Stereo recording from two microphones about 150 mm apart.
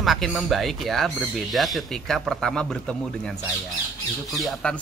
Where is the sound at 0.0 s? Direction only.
Centre (ahead or behind).